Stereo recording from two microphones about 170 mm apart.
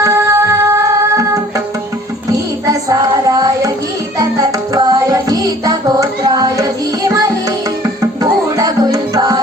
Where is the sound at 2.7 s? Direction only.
20° right (ahead or behind).